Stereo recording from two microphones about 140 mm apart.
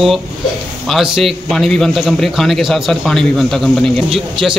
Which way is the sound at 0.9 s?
Centre (ahead or behind).